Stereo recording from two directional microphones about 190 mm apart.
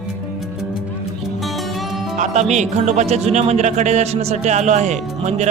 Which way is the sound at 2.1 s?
40° right (ahead or behind).